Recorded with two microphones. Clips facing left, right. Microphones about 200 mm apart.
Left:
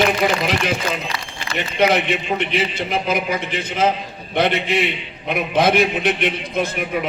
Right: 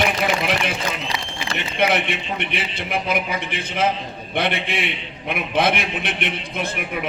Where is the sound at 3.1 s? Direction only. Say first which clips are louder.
Left 3 dB; 60° right (ahead or behind).